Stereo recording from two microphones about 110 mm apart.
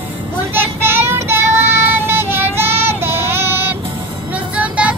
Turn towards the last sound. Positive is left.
turn(degrees=-10)  # may be behind; listen again after turning